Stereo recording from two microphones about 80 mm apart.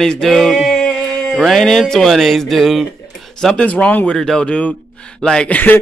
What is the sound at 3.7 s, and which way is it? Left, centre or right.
Speech, centre.